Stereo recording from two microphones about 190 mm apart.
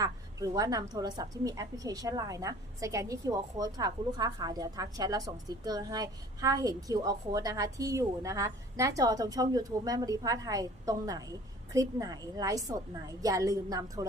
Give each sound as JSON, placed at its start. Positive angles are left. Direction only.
{"t": 0.0, "sound": "a woman's voice", "side_deg": -20}